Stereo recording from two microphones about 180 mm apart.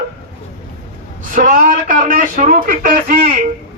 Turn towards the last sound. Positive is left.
turn(degrees=-55)  # may be behind; listen again after turning